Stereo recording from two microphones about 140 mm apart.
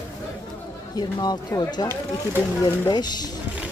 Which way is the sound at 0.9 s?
30° left (ahead or behind).